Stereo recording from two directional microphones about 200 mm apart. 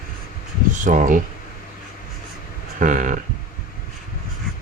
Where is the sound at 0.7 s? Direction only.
40° right (ahead or behind).